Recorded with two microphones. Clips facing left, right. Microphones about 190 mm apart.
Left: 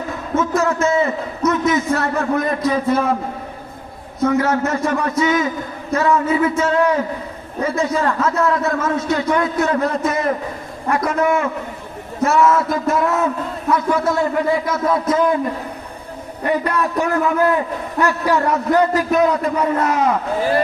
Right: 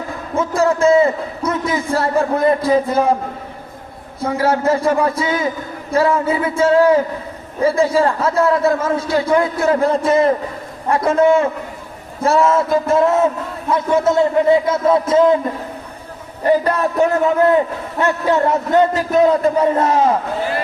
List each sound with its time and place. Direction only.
0.3 s a man's voice: 30° right (ahead or behind)
4.2 s a man's voice: 30° right (ahead or behind)
16.5 s a man's voice: 30° right (ahead or behind)